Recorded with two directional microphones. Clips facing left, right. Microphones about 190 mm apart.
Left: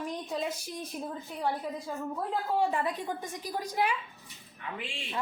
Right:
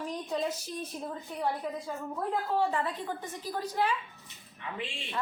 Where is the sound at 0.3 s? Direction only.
10° left (ahead or behind).